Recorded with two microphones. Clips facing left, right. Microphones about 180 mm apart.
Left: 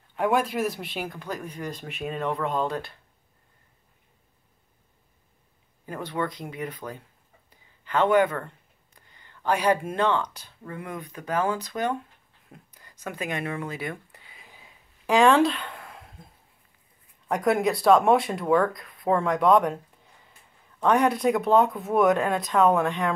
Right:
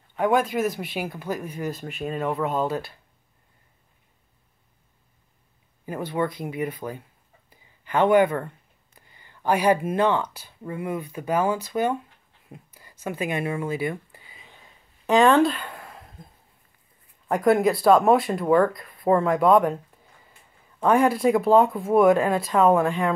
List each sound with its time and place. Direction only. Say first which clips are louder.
0.1 s speech: right 2 dB; centre (ahead or behind)
5.9 s speech: right 4 dB; 10° right (ahead or behind)
7.4 s a sound: even; 10° right (ahead or behind)
8.9 s speech: right 1 dB; 10° right (ahead or behind)
12.4 s a sound: right 5 dB; 10° right (ahead or behind)
13.0 s speech: right 4 dB; 10° right (ahead or behind)
15.0 s a sound: right 2 dB; centre (ahead or behind)
17.3 s speech: right 4 dB; centre (ahead or behind)
20.8 s speech: right 2 dB; centre (ahead or behind)